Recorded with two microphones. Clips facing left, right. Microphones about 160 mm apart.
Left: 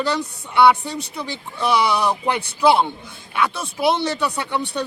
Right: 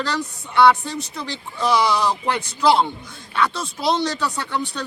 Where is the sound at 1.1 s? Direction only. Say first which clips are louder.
Left 1 dB; 10° left (ahead or behind).